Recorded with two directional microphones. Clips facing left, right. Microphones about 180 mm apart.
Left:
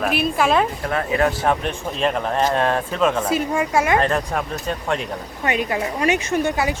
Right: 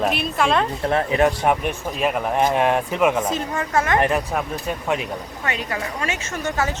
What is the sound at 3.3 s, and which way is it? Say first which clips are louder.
Speech: left 4 dB; 10° left (ahead or behind).